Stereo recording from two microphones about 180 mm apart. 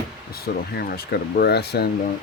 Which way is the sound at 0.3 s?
60° left (ahead or behind).